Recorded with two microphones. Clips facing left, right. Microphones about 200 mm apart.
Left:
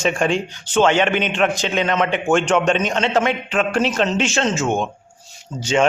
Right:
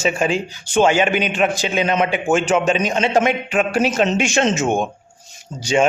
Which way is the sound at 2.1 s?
5° right (ahead or behind).